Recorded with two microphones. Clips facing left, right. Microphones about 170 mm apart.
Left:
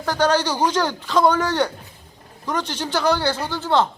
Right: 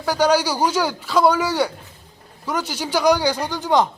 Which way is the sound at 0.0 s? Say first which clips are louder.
Right 2 dB; 10° right (ahead or behind).